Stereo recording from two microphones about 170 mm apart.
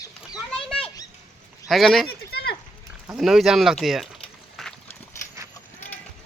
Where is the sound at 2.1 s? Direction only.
70° left (ahead or behind).